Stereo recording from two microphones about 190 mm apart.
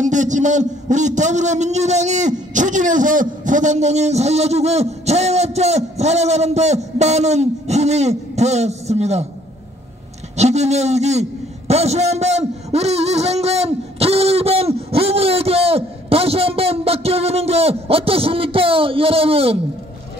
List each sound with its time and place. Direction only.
0.0 s a man's voice: 40° right (ahead or behind)
10.3 s a man's voice: 35° right (ahead or behind)